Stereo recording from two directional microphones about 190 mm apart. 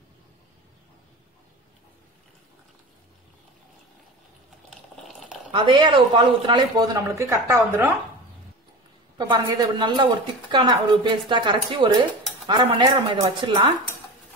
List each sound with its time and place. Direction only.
4.6 s a sound: centre (ahead or behind)
5.5 s speech: 25° right (ahead or behind)
9.2 s speech: 20° right (ahead or behind)